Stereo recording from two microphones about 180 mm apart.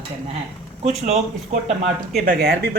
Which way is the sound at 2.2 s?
55° right (ahead or behind).